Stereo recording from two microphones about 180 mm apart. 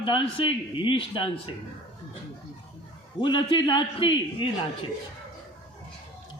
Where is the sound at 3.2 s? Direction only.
25° left (ahead or behind).